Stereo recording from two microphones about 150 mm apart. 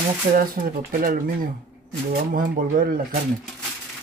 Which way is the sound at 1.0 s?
70° right (ahead or behind).